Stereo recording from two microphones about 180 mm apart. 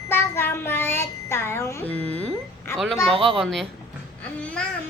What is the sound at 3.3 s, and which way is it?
Speech, centre (ahead or behind).